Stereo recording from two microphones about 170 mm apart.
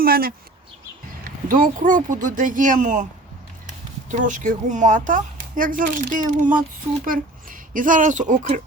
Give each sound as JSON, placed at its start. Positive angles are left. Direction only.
{"t": 0.0, "sound": "speech", "side_deg": -60}
{"t": 1.5, "sound": "speech", "side_deg": -50}
{"t": 4.1, "sound": "speech", "side_deg": -50}